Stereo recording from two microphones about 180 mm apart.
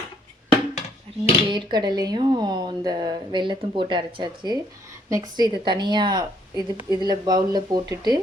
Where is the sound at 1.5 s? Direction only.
25° right (ahead or behind).